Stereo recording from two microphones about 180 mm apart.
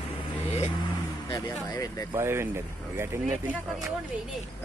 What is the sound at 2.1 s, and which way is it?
Speech, 15° right (ahead or behind).